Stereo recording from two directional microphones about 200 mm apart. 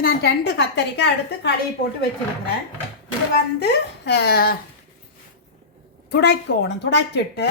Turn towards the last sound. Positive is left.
turn(degrees=60)  # may be behind; listen again after turning